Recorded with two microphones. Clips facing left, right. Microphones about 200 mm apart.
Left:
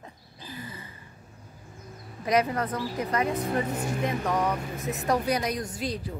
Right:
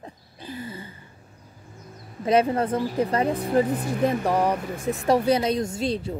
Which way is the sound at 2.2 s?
30° right (ahead or behind).